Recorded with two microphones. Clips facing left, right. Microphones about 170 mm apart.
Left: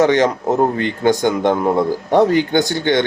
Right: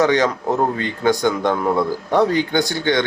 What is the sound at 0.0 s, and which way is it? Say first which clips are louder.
Speech: left 3 dB; 20° left (ahead or behind).